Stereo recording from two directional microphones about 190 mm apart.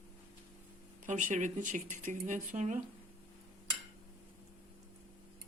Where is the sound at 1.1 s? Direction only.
40° right (ahead or behind).